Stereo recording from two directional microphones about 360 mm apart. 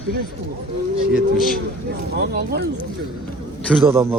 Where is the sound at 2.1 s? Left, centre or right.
Right.